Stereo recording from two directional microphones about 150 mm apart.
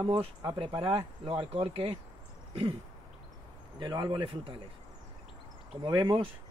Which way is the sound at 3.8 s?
30° right (ahead or behind).